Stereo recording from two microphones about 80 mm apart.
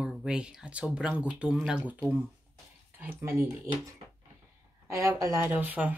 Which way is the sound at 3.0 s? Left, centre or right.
Right.